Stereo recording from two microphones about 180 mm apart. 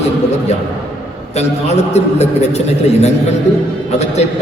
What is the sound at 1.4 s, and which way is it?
A man's voice, 35° left (ahead or behind).